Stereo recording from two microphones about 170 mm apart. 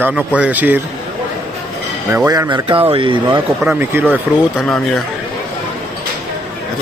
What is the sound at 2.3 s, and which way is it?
Speech, 25° right (ahead or behind).